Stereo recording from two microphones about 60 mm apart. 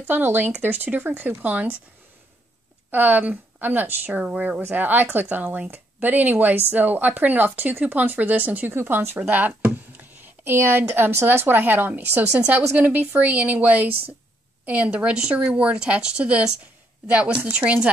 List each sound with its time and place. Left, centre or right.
0.0 s speech: right
2.9 s speech: right
9.2 s speech: right